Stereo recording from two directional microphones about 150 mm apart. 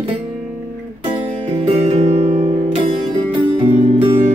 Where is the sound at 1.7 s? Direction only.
40° right (ahead or behind).